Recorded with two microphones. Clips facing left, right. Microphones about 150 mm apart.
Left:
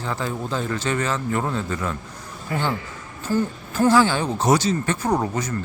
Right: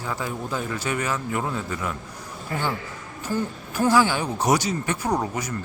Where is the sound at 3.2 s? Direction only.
15° right (ahead or behind).